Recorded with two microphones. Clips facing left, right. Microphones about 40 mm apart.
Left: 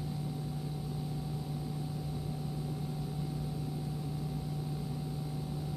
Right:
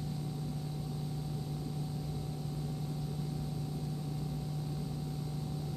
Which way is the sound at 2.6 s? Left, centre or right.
Centre.